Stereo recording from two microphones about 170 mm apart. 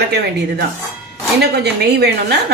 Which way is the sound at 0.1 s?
75° right (ahead or behind).